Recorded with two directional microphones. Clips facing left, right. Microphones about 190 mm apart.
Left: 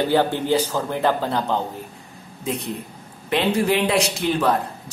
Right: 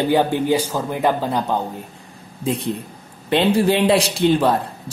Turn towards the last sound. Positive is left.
turn(degrees=-30)  # may be behind; listen again after turning